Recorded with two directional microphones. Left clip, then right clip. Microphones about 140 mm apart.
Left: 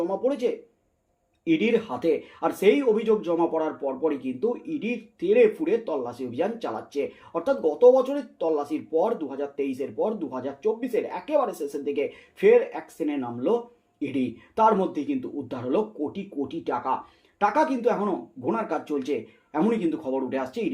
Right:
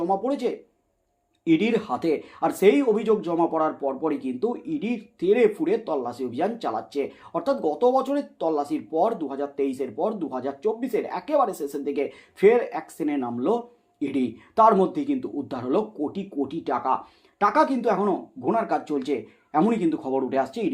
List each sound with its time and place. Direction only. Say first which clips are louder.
0.1 s speech: right 1 dB; 30° right (ahead or behind)